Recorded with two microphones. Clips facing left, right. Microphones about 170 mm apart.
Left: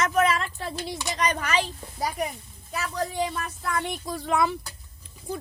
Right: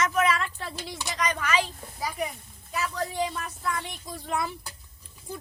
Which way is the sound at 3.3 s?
50° left (ahead or behind).